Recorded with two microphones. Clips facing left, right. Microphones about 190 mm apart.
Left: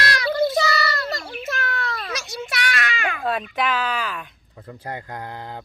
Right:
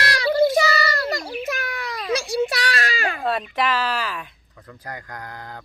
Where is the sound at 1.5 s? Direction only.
15° right (ahead or behind).